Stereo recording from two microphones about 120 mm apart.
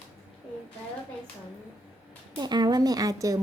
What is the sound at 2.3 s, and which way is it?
A woman's voice, 35° right (ahead or behind).